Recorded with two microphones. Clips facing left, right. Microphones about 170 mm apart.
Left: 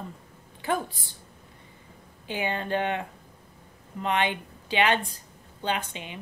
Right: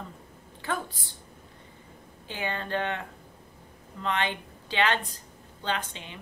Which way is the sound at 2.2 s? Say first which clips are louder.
Left 4 dB; 15° left (ahead or behind).